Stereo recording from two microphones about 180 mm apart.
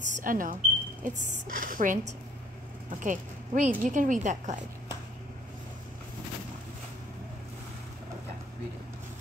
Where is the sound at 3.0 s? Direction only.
45° right (ahead or behind).